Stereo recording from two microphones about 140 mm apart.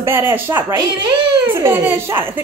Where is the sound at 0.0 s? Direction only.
15° right (ahead or behind).